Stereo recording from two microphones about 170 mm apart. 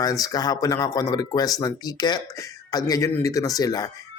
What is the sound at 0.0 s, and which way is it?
Speech, 20° left (ahead or behind).